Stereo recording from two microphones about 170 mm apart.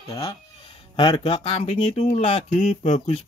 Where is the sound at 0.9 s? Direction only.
30° left (ahead or behind).